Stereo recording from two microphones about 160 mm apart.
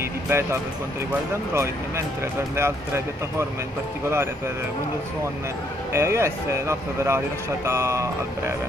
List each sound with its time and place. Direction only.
0.3 s speech: 15° right (ahead or behind)
5.9 s speech: 15° right (ahead or behind)